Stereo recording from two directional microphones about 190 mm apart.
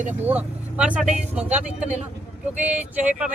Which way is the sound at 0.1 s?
10° right (ahead or behind).